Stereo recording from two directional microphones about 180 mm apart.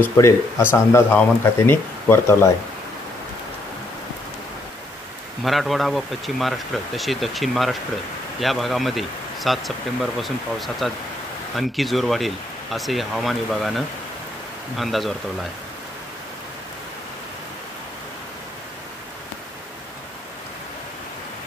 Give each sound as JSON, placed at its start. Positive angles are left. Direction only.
{"t": 0.2, "sound": "speech", "side_deg": 15}
{"t": 5.4, "sound": "speech", "side_deg": 0}